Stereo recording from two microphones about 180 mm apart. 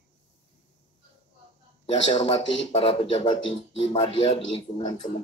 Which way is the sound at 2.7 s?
35° left (ahead or behind).